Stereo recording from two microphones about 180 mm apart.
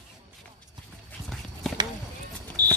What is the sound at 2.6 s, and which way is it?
Fire alarm, 20° right (ahead or behind).